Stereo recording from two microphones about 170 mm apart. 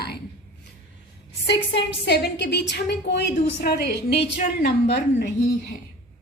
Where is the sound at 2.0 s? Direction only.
75° left (ahead or behind).